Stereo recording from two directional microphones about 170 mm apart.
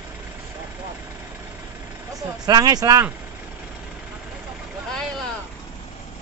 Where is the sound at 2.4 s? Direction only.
25° right (ahead or behind).